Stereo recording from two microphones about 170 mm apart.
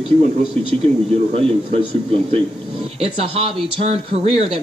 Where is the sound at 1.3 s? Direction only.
35° right (ahead or behind).